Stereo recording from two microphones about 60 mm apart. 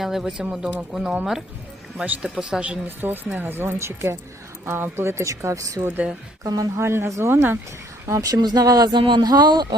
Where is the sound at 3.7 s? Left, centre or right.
Right.